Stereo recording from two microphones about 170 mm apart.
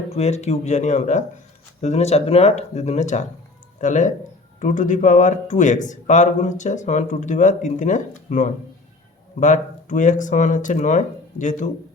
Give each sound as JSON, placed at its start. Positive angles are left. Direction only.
{"t": 0.1, "sound": "speech", "side_deg": 40}